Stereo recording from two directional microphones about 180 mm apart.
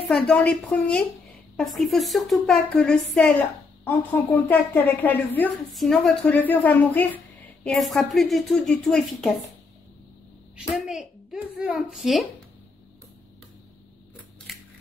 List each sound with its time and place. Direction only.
0.1 s a woman's voice: 5° left (ahead or behind)
10.7 s speech: centre (ahead or behind)